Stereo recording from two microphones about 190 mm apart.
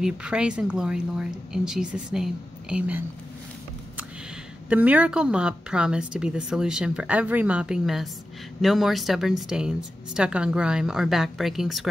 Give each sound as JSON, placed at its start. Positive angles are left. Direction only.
{"t": 0.0, "sound": "a woman's voice", "side_deg": -5}
{"t": 4.6, "sound": "a woman's voice", "side_deg": -5}